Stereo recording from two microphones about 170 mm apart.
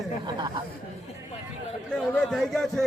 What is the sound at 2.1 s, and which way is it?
Speech, centre (ahead or behind).